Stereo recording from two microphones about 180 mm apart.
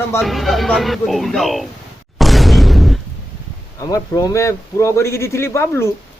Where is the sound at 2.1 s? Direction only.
Centre (ahead or behind).